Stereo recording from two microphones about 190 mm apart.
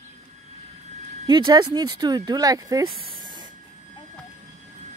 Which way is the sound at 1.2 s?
25° right (ahead or behind).